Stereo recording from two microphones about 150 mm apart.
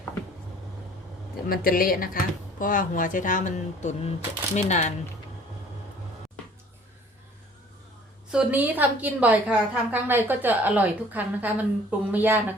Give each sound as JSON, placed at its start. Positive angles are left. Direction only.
{"t": 1.5, "sound": "speech", "side_deg": 75}
{"t": 8.3, "sound": "a woman's voice", "side_deg": -10}